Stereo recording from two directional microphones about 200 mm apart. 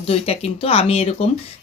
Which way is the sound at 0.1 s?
30° left (ahead or behind).